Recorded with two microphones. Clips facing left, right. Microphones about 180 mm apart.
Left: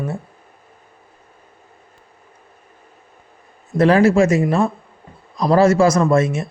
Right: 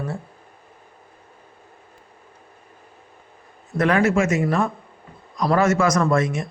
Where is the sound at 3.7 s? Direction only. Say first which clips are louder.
Left 5 dB; 30° left (ahead or behind).